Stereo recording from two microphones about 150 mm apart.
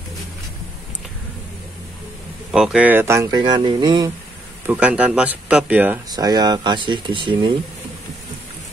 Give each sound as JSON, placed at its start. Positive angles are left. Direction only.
{"t": 2.5, "sound": "speech", "side_deg": -5}
{"t": 3.3, "sound": "speech", "side_deg": -30}
{"t": 4.6, "sound": "speech", "side_deg": -10}
{"t": 6.0, "sound": "speech", "side_deg": -25}